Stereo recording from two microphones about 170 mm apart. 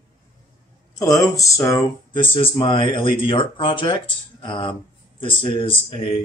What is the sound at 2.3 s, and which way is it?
Speech, 30° left (ahead or behind).